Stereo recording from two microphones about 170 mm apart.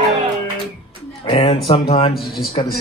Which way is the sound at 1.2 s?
35° left (ahead or behind).